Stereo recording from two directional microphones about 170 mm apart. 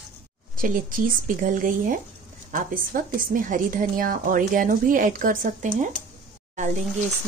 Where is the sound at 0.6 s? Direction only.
55° right (ahead or behind).